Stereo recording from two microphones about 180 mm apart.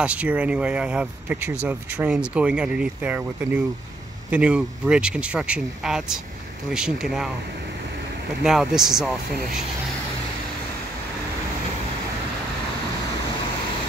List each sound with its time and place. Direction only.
0.0 s speech: 5° right (ahead or behind)
8.5 s speech: centre (ahead or behind)
9.3 s speech: 55° right (ahead or behind)